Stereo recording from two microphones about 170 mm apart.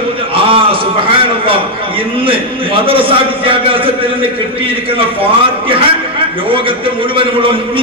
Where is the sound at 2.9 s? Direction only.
30° right (ahead or behind).